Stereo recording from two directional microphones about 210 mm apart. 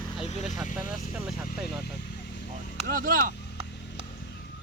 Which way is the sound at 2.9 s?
40° right (ahead or behind).